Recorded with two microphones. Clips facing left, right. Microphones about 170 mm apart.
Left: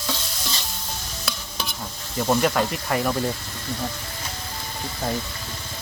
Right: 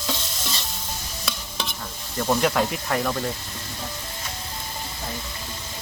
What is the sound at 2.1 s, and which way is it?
Speech, 5° left (ahead or behind).